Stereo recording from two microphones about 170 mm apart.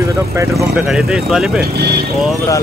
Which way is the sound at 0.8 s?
5° right (ahead or behind).